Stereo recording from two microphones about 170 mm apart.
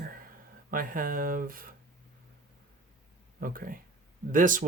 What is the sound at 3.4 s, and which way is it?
Speech, 55° right (ahead or behind).